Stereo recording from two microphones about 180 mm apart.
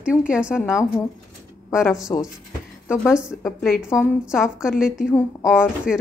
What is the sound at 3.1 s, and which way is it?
A woman's voice, 5° right (ahead or behind).